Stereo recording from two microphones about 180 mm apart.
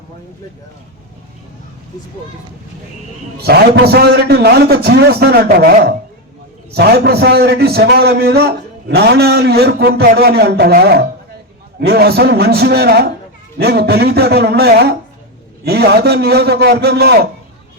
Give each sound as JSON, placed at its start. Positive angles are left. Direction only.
{"t": 3.4, "sound": "a man's voice", "side_deg": -60}